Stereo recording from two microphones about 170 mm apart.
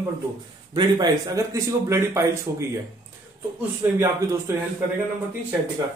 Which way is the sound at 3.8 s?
15° right (ahead or behind).